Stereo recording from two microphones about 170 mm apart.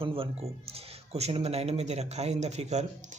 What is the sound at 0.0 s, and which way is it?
Speech, 35° right (ahead or behind).